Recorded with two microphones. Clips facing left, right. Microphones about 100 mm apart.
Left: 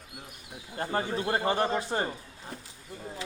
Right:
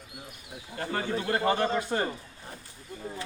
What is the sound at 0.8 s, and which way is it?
A man's voice, 25° left (ahead or behind).